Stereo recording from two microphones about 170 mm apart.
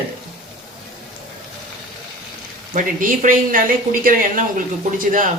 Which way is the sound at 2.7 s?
50° right (ahead or behind).